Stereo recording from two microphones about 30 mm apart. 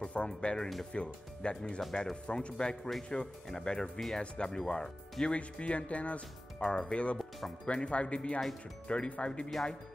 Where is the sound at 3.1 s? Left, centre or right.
Left.